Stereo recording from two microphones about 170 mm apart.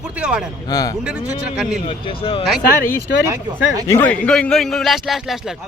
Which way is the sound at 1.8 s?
30° left (ahead or behind).